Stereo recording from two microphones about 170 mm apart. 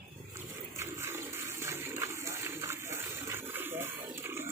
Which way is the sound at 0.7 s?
15° right (ahead or behind).